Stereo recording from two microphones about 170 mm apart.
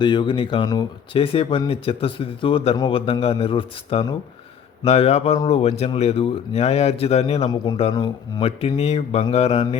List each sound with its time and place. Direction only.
0.0 s speech: 30° left (ahead or behind)